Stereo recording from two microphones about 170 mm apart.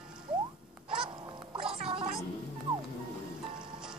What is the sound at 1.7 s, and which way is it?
Gargling, 35° right (ahead or behind).